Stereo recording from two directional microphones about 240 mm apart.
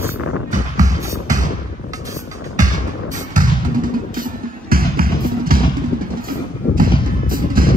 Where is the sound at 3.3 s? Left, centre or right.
Right.